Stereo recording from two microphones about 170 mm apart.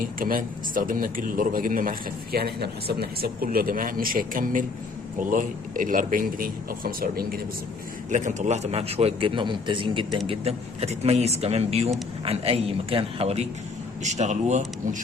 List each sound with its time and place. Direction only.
0.0 s a man's voice: 55° right (ahead or behind)
8.1 s a man's voice: 45° right (ahead or behind)